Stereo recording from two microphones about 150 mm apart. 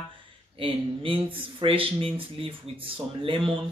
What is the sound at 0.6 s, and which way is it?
Speech, 35° right (ahead or behind).